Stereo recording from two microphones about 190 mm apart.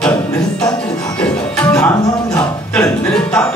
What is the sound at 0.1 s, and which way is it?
Music, 20° left (ahead or behind).